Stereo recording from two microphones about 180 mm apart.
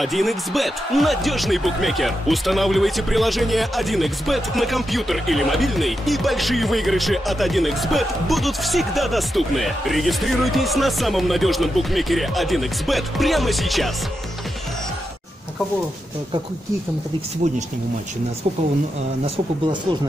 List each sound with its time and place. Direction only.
0.0 s speech: centre (ahead or behind)
19.2 s speech: 30° right (ahead or behind)